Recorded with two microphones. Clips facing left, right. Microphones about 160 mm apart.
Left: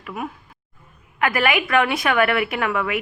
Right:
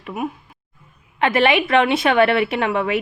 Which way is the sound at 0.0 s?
20° right (ahead or behind).